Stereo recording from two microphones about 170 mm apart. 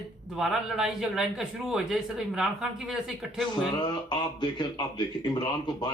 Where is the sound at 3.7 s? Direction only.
25° left (ahead or behind).